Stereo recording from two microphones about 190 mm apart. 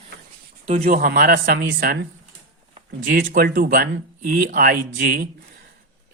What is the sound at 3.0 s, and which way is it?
Speech, 50° right (ahead or behind).